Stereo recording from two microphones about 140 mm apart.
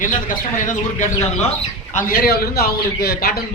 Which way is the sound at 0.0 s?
65° left (ahead or behind).